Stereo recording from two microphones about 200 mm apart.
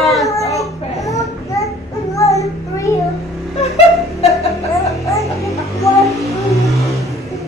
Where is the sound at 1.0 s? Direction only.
15° left (ahead or behind).